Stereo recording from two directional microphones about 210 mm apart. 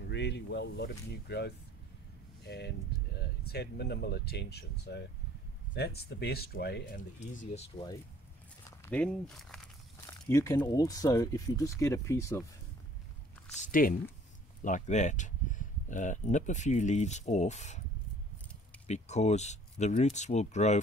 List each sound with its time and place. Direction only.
0.1 s speech: 55° left (ahead or behind)
7.2 s speech: 30° left (ahead or behind)
8.6 s speech: 10° left (ahead or behind)
13.6 s speech: 40° left (ahead or behind)
18.9 s speech: 30° left (ahead or behind)